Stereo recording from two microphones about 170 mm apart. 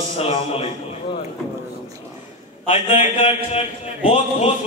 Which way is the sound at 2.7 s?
40° left (ahead or behind).